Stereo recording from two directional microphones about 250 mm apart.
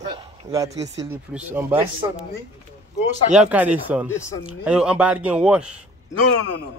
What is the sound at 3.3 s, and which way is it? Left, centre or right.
Speech, centre.